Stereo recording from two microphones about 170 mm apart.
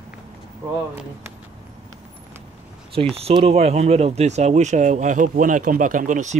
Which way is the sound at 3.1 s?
35° right (ahead or behind).